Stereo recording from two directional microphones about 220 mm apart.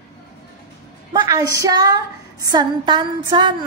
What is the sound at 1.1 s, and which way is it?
A woman's voice, 15° right (ahead or behind).